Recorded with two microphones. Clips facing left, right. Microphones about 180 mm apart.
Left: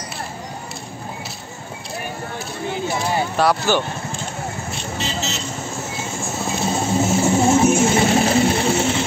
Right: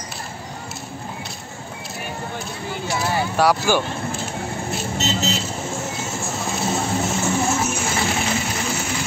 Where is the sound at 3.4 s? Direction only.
10° right (ahead or behind).